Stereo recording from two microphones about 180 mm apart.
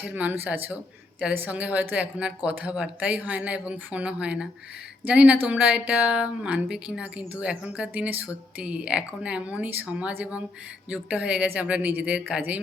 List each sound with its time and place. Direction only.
0.0 s speech: 5° right (ahead or behind)